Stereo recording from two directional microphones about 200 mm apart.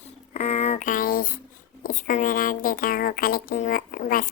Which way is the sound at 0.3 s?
30° left (ahead or behind).